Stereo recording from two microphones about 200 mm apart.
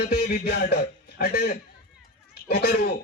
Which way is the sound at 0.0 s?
50° left (ahead or behind).